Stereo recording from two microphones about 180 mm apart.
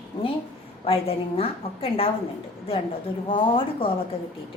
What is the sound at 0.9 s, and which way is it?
Speech, 30° left (ahead or behind).